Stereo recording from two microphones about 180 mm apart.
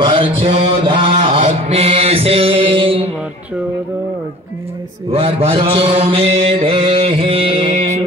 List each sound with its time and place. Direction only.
0.0 s mantra: 30° right (ahead or behind)
5.1 s mantra: 30° right (ahead or behind)